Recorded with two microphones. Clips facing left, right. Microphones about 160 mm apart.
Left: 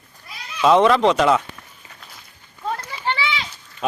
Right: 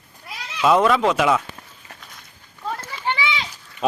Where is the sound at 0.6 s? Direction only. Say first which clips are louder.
Left 2 dB; centre (ahead or behind).